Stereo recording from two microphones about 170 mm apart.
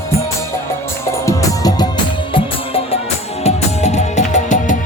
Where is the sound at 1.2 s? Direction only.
20° left (ahead or behind).